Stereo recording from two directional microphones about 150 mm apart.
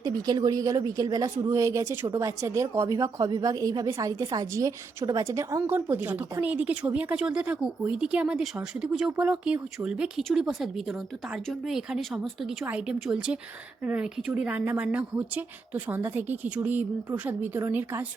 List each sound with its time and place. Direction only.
0.0 s speech: 25° right (ahead or behind)